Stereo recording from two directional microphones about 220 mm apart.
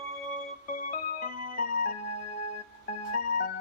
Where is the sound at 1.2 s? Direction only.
40° left (ahead or behind).